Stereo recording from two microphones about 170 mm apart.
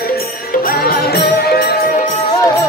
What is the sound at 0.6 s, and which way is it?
Music, 60° left (ahead or behind).